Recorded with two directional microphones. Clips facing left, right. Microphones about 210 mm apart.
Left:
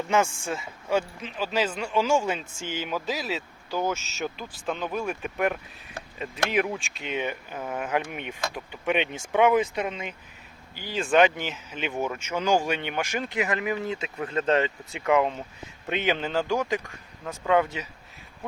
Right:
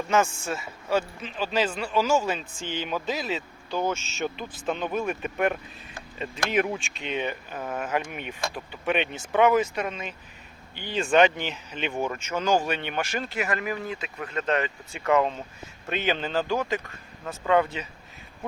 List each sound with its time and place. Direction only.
0.4 s a man's voice: 15° left (ahead or behind)
10.8 s a man's voice: centre (ahead or behind); by 14.7 s 30° left (ahead or behind)
14.9 s a man's voice: 10° left (ahead or behind)